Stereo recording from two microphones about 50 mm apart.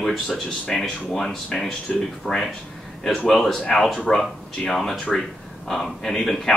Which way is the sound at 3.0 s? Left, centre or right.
Centre.